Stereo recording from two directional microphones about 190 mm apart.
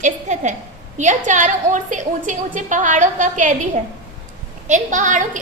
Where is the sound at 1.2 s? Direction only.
40° right (ahead or behind).